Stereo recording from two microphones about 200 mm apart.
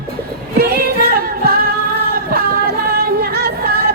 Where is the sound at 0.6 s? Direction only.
50° right (ahead or behind).